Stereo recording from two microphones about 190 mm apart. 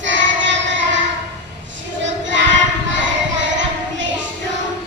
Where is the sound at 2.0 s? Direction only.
75° right (ahead or behind).